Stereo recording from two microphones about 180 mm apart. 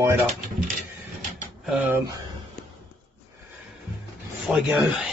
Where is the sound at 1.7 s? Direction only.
15° right (ahead or behind).